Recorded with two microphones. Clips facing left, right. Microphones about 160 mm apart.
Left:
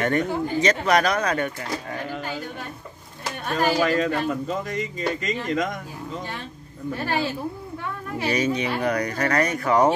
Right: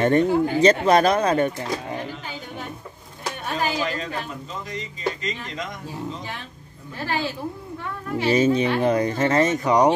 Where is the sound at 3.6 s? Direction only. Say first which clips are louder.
Left 6 dB; 50° left (ahead or behind).